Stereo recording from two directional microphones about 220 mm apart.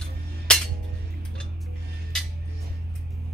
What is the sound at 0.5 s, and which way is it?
Music, 5° left (ahead or behind).